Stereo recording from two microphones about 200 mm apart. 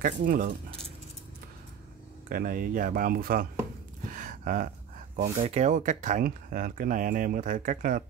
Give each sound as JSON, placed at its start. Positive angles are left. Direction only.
{"t": 0.0, "sound": "speech", "side_deg": -45}
{"t": 2.2, "sound": "speech", "side_deg": -45}
{"t": 4.0, "sound": "a sound", "side_deg": -40}
{"t": 5.2, "sound": "speech", "side_deg": -35}